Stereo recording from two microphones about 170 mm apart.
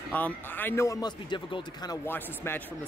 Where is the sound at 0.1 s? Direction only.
10° left (ahead or behind); by 2.0 s 25° left (ahead or behind).